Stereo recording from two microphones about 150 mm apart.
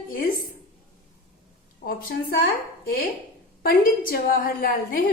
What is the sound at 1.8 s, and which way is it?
Speech, 75° left (ahead or behind).